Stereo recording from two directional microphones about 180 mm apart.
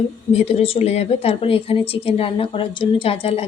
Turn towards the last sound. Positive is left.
turn(degrees=30)  # may be behind; listen again after turning